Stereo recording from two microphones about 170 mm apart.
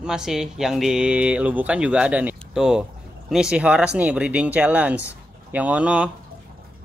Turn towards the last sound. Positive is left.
turn(degrees=-5)  # may be behind; listen again after turning